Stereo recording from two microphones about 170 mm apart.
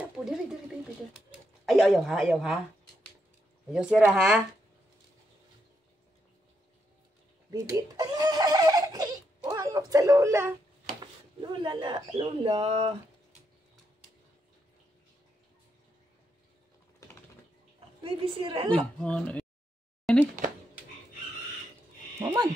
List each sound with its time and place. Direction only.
0.0 s a sound: 5° right (ahead or behind)
1.3 s speech: centre (ahead or behind)
4.1 s speech: 5° right (ahead or behind)
7.5 s giggle: 20° right (ahead or behind)
11.0 s speech: 25° right (ahead or behind)
17.7 s a woman's voice: 30° right (ahead or behind)
18.9 s speech: 5° left (ahead or behind)
20.1 s a sound: centre (ahead or behind)
22.2 s speech: 25° right (ahead or behind)